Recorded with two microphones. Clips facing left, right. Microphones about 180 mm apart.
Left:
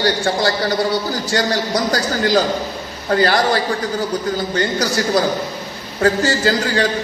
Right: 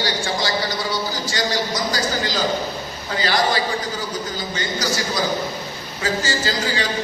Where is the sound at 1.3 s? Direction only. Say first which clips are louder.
Left 6 dB; 60° left (ahead or behind).